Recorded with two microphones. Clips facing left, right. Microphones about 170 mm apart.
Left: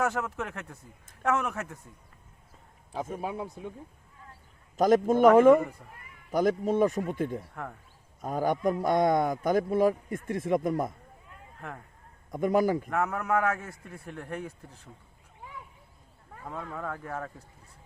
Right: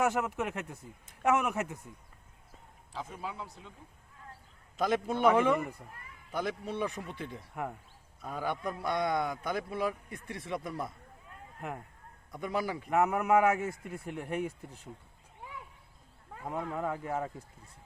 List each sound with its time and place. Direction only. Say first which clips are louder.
0.0 s a man's voice: even; 15° right (ahead or behind)
2.9 s a man's voice: left 7 dB; 50° left (ahead or behind)
4.8 s a man's voice: left 7 dB; 45° left (ahead or behind)
7.5 s a man's voice: right 2 dB; 15° right (ahead or behind)
8.2 s a man's voice: left 8 dB; 45° left (ahead or behind)
11.6 s a man's voice: right 2 dB; 15° right (ahead or behind)
12.3 s a man's voice: left 9 dB; 45° left (ahead or behind)
12.9 s a man's voice: right 2 dB; 15° right (ahead or behind)
16.4 s a man's voice: right 3 dB; 15° right (ahead or behind)